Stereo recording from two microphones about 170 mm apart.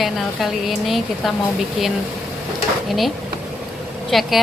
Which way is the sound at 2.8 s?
Centre (ahead or behind).